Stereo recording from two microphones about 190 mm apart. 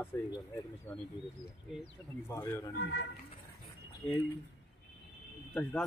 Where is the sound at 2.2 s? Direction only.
10° left (ahead or behind).